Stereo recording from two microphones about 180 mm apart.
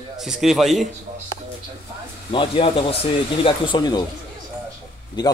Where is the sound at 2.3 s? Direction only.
30° left (ahead or behind).